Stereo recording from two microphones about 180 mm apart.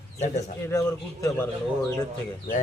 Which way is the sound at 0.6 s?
15° left (ahead or behind).